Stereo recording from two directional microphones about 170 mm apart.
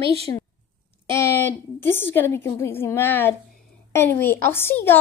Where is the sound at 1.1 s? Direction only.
15° left (ahead or behind).